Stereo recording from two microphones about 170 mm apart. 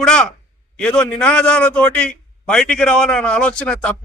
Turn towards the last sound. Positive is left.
turn(degrees=5)  # may be behind; listen again after turning